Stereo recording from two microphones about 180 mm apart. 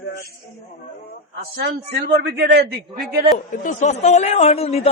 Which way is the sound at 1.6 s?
65° right (ahead or behind).